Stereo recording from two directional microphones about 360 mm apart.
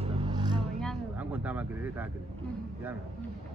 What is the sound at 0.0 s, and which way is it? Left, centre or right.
Vehicle, centre.